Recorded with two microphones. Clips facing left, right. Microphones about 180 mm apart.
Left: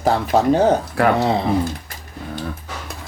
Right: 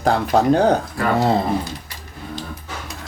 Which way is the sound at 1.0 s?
75° left (ahead or behind).